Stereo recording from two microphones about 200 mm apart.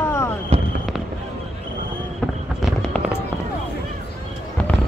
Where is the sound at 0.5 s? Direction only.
30° right (ahead or behind).